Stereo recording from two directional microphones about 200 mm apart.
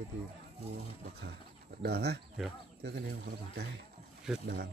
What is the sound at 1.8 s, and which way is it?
Speech, 55° right (ahead or behind).